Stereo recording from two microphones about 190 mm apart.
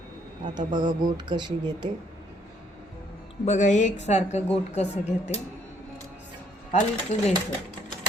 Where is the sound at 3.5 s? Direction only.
40° left (ahead or behind).